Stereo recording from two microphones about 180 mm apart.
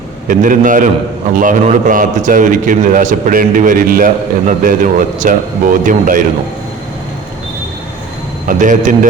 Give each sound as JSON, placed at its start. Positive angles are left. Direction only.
{"t": 0.3, "sound": "a man's voice", "side_deg": -45}
{"t": 8.4, "sound": "a man's voice", "side_deg": -45}